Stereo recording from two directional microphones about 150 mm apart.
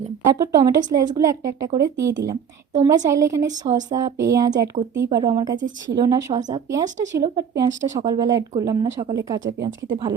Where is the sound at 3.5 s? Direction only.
55° right (ahead or behind).